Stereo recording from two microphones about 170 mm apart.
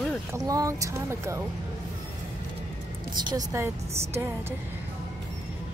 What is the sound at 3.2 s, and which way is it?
A woman's voice, 20° right (ahead or behind).